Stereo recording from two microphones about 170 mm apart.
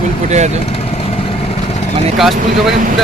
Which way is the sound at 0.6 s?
35° left (ahead or behind).